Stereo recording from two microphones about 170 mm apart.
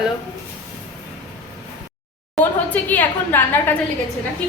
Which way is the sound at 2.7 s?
10° left (ahead or behind).